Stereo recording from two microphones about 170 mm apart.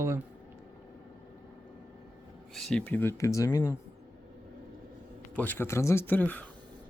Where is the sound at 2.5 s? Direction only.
5° left (ahead or behind); by 3.7 s 20° left (ahead or behind).